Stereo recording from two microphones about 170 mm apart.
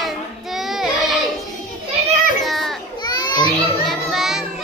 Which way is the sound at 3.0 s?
25° left (ahead or behind).